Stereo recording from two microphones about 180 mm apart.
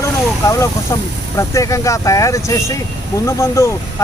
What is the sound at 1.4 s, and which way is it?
Speech, 15° left (ahead or behind).